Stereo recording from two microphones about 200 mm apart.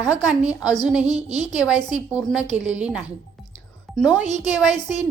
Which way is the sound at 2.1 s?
5° right (ahead or behind).